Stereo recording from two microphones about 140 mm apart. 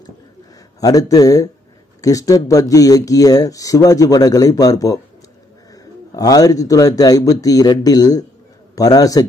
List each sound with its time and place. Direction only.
0.7 s speech: 25° left (ahead or behind)
6.1 s speech: 25° left (ahead or behind)